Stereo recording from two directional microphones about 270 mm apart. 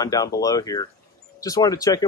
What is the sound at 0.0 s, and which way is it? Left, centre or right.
Speech, centre.